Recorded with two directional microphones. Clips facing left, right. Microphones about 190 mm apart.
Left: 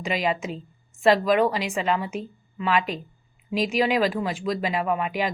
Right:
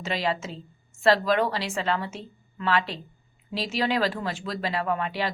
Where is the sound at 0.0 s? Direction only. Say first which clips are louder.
Left 3 dB; 15° left (ahead or behind).